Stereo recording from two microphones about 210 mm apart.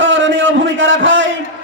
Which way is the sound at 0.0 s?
65° right (ahead or behind).